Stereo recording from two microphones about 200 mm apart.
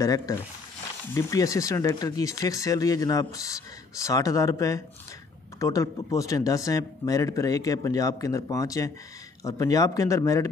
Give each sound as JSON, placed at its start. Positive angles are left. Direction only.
{"t": 0.0, "sound": "speech", "side_deg": 15}